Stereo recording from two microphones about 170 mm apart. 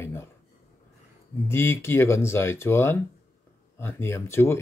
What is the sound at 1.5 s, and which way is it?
Speech, 15° left (ahead or behind).